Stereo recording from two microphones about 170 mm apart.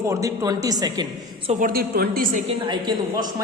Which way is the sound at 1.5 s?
55° right (ahead or behind).